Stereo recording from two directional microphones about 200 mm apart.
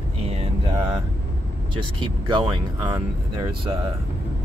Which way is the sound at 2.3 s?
20° right (ahead or behind).